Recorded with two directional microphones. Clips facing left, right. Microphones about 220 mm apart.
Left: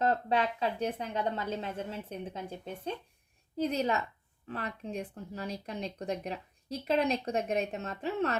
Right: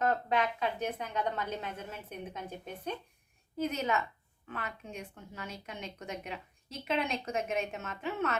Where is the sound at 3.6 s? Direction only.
35° left (ahead or behind).